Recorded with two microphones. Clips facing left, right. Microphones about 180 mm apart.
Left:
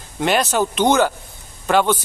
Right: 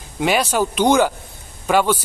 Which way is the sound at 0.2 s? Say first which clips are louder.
Even; 10° right (ahead or behind).